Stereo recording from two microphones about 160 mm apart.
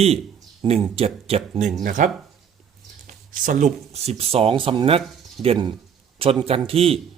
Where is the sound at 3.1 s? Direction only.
50° right (ahead or behind).